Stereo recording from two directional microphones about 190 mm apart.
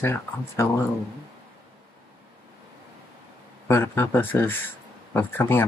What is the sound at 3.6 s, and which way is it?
Speech, 10° left (ahead or behind).